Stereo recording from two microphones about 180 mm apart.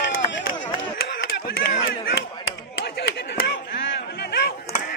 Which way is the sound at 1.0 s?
65° left (ahead or behind).